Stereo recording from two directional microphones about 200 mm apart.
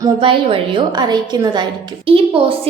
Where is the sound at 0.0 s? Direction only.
25° right (ahead or behind).